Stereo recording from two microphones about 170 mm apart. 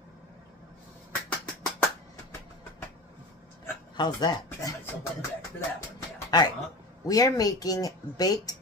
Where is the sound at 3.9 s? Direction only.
25° left (ahead or behind).